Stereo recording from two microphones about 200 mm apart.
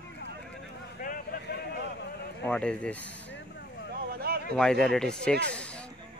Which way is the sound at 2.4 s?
5° left (ahead or behind).